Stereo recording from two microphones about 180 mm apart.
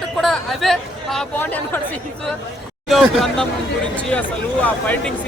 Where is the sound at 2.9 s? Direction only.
Centre (ahead or behind).